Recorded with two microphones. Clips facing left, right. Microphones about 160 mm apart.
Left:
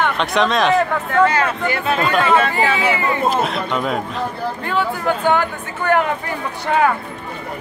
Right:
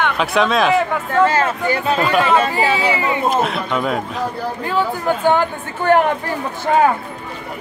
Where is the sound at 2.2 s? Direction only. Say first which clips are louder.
Even; 20° right (ahead or behind).